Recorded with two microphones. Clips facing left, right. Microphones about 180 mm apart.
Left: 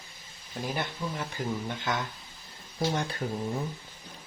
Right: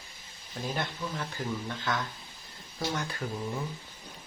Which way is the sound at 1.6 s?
20° left (ahead or behind).